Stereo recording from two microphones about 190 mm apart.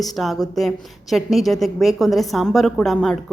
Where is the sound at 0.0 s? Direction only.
Centre (ahead or behind).